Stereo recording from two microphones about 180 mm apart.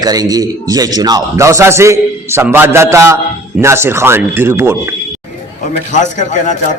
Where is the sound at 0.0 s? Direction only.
20° right (ahead or behind).